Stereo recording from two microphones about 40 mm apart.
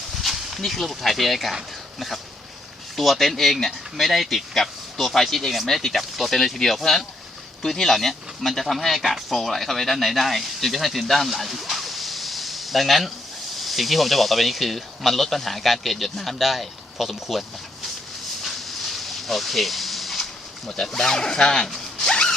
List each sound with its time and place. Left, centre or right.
0.2 s speech: centre
18.4 s a sound: centre
20.7 s speech: centre
21.9 s zipper: left